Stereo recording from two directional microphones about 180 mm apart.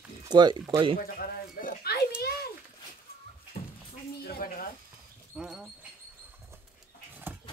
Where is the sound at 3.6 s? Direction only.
50° left (ahead or behind).